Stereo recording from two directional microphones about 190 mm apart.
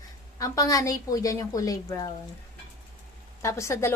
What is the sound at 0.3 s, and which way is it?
A woman's voice, 15° left (ahead or behind).